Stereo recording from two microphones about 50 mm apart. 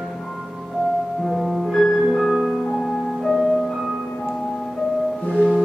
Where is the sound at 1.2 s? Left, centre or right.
Centre.